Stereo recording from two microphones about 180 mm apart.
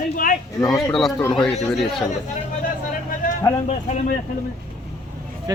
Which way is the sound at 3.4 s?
15° left (ahead or behind).